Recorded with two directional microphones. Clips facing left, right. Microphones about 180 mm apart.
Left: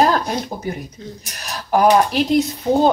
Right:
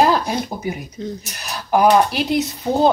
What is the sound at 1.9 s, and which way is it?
Speech, 5° right (ahead or behind).